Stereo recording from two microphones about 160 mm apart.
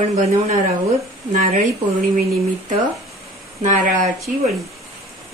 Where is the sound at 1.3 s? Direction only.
55° right (ahead or behind).